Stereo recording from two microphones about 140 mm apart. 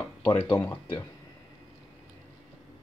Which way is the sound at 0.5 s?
15° left (ahead or behind).